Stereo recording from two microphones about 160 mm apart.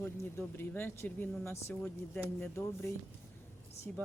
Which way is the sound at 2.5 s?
15° left (ahead or behind).